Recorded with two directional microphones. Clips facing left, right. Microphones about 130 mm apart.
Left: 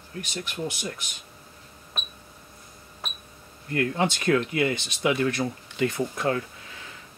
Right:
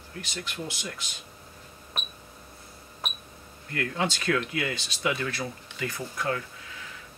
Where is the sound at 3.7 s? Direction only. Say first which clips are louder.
Left 4 dB; 30° left (ahead or behind).